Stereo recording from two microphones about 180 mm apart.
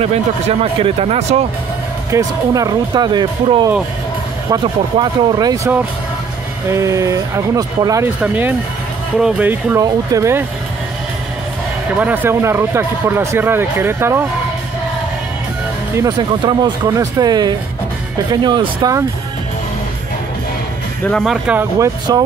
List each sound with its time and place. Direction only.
0.0 s speech: 35° right (ahead or behind)
2.0 s speech: 20° right (ahead or behind)
5.3 s speech: 20° right (ahead or behind)
6.7 s speech: 15° right (ahead or behind)
12.0 s speech: 10° right (ahead or behind)
16.0 s speech: 25° right (ahead or behind)
21.0 s speech: 5° left (ahead or behind)
21.7 s speech: 20° right (ahead or behind)